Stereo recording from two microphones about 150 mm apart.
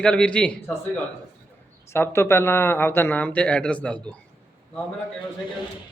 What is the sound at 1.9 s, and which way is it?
Speech, 15° left (ahead or behind).